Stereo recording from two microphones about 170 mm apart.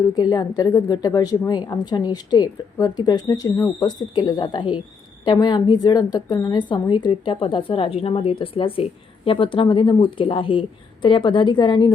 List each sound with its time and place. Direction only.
0.1 s a woman's voice: 25° left (ahead or behind)